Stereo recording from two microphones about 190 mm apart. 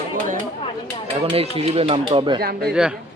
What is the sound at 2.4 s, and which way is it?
Speech, 55° right (ahead or behind).